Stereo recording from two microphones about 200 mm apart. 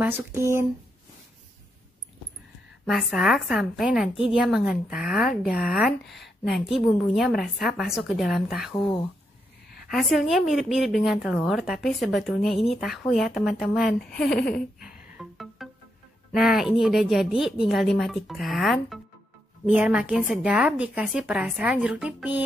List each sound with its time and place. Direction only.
0.0 s speech: 10° right (ahead or behind)
2.8 s a woman's voice: centre (ahead or behind)
9.8 s a woman's voice: centre (ahead or behind)
14.8 s music: 5° right (ahead or behind)
16.3 s a woman's voice: centre (ahead or behind)